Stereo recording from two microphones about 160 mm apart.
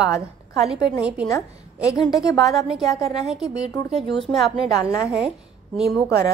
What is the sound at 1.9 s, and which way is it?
Speech, 25° left (ahead or behind).